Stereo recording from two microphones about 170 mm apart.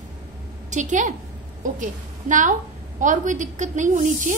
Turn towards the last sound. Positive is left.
turn(degrees=-50)  # may be behind; listen again after turning